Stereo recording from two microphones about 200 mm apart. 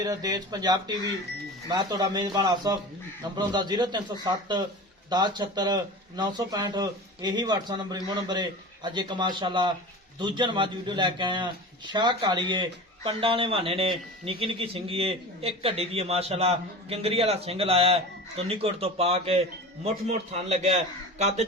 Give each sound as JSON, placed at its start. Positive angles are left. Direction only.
{"t": 0.0, "sound": "speech", "side_deg": -20}